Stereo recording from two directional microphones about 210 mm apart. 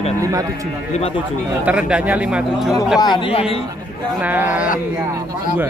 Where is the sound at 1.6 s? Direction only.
5° right (ahead or behind).